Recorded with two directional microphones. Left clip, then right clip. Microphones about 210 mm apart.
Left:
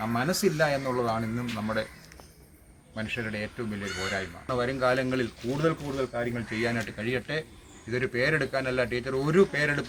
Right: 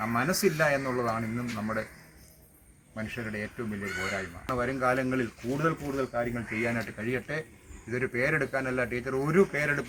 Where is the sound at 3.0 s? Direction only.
10° left (ahead or behind).